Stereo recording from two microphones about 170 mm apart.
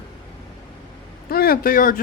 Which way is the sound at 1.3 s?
60° left (ahead or behind).